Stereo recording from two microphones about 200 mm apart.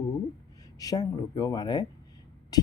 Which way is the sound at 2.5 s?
20° left (ahead or behind).